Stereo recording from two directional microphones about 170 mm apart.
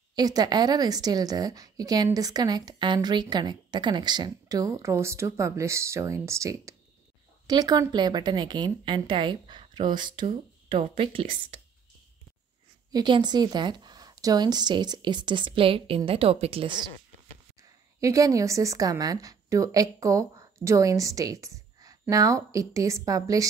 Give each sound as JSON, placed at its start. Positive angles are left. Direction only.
{"t": 0.1, "sound": "a woman's voice", "side_deg": -25}
{"t": 12.9, "sound": "a woman's voice", "side_deg": -25}
{"t": 18.0, "sound": "a woman's voice", "side_deg": -20}